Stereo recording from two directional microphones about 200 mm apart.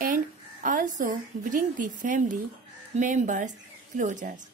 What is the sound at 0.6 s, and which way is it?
A woman's voice, 40° right (ahead or behind).